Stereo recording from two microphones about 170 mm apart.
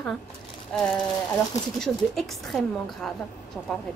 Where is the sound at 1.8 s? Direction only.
Centre (ahead or behind).